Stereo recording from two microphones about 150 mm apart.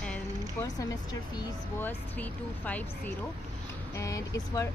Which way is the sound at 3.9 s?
20° left (ahead or behind).